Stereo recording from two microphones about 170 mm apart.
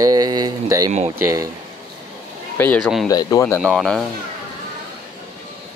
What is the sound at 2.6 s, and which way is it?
Speech, 10° left (ahead or behind).